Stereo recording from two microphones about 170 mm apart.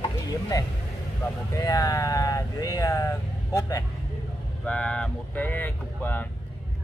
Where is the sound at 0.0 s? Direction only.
20° left (ahead or behind).